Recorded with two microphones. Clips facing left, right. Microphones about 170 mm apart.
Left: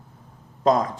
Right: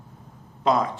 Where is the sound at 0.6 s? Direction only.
45° left (ahead or behind).